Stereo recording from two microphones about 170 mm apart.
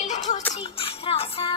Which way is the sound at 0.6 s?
35° left (ahead or behind).